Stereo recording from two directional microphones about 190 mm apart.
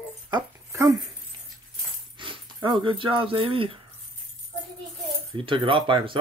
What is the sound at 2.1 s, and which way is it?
Speech, 25° right (ahead or behind).